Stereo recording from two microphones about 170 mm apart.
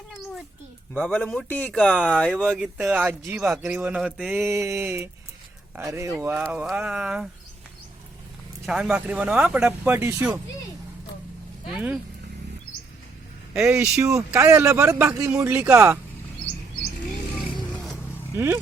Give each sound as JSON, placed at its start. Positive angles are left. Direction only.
{"t": 0.9, "sound": "speech", "side_deg": 10}
{"t": 8.6, "sound": "speech", "side_deg": -5}
{"t": 13.5, "sound": "speech", "side_deg": -5}
{"t": 14.0, "sound": "speech", "side_deg": -20}
{"t": 18.3, "sound": "speech", "side_deg": -15}